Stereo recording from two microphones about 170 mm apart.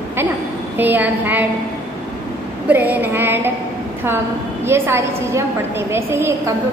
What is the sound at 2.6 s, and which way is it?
Speech, 10° right (ahead or behind).